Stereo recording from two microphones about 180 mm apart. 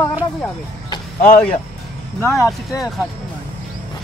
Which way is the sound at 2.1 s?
15° left (ahead or behind).